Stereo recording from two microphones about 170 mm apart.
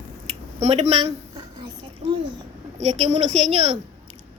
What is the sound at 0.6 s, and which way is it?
Speech, 40° right (ahead or behind).